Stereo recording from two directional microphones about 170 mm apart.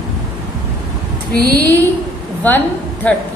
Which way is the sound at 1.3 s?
65° right (ahead or behind).